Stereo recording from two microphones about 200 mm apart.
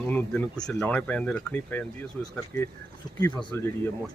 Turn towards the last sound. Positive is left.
turn(degrees=15)  # may be behind; listen again after turning